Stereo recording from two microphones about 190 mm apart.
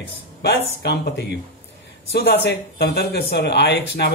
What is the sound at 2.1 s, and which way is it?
Speech, 55° left (ahead or behind).